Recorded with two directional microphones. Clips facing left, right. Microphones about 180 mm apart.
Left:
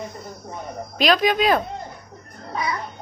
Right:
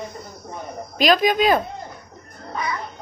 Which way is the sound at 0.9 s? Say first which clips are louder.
Right 1 dB; centre (ahead or behind).